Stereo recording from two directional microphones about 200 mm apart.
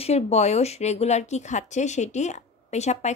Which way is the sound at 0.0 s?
30° left (ahead or behind).